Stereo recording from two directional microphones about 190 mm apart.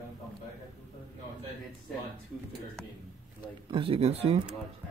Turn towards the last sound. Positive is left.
turn(degrees=-30)  # may be behind; listen again after turning